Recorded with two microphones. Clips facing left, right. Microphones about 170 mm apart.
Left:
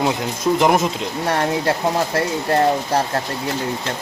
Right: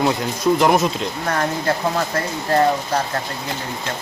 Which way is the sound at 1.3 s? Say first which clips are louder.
Left 2 dB; 30° left (ahead or behind).